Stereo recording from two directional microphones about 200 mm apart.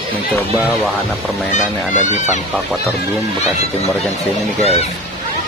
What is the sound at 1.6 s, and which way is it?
Speech, 35° left (ahead or behind).